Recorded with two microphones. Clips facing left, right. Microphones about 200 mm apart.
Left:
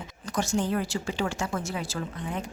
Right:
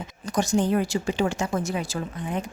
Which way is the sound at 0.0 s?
15° right (ahead or behind).